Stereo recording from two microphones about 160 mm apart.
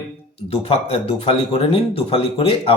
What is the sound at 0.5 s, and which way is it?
Speech, 40° left (ahead or behind).